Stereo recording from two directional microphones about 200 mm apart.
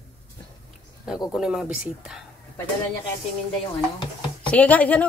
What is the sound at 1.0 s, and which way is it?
Speech, 5° right (ahead or behind).